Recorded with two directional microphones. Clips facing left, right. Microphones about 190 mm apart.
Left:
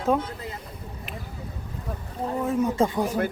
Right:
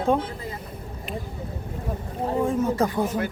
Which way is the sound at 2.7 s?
25° left (ahead or behind).